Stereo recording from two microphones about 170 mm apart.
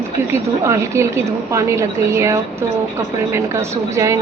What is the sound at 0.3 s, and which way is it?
A woman's voice, 15° right (ahead or behind).